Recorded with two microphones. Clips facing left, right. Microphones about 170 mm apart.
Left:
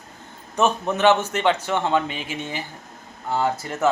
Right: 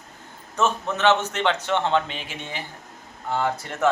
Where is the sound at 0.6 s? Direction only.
15° left (ahead or behind).